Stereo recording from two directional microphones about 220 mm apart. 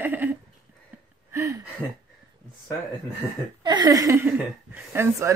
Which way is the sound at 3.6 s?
20° right (ahead or behind).